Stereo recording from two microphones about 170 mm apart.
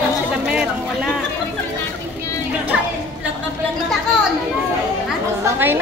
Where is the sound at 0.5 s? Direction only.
5° right (ahead or behind).